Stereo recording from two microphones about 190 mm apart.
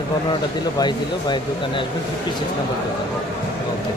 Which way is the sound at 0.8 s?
25° left (ahead or behind).